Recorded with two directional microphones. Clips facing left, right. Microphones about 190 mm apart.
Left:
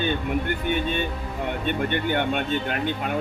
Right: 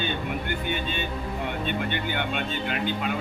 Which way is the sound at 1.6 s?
55° left (ahead or behind).